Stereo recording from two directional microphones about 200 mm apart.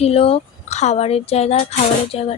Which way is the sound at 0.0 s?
30° left (ahead or behind).